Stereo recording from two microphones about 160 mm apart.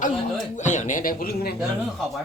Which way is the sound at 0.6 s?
50° left (ahead or behind).